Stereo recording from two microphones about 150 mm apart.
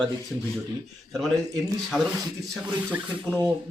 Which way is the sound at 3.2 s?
10° left (ahead or behind).